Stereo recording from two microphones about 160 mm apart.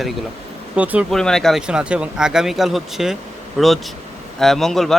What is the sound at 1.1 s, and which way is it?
A man's voice, 5° left (ahead or behind).